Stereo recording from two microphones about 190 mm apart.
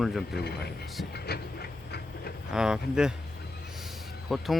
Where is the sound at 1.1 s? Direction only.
55° left (ahead or behind).